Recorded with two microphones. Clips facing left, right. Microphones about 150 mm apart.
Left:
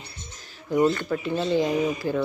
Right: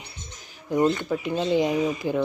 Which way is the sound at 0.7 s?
10° right (ahead or behind).